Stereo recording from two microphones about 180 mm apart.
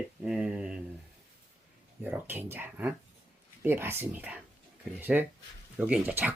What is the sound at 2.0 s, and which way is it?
Speech, 10° right (ahead or behind).